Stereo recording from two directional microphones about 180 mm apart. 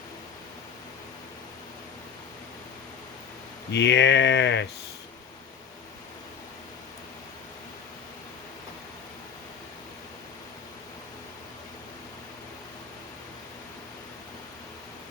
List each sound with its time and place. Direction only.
3.7 s speech: 75° left (ahead or behind)